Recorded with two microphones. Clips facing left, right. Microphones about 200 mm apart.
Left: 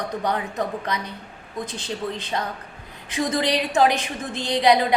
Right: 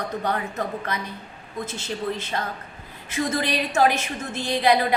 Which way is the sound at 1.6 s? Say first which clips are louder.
Even; 15° left (ahead or behind).